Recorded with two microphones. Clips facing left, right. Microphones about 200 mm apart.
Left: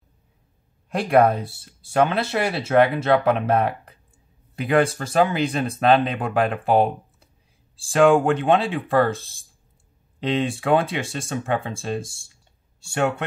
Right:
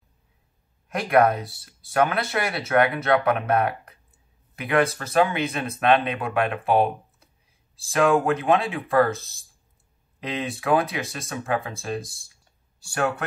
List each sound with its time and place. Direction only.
0.8 s speech: 30° left (ahead or behind)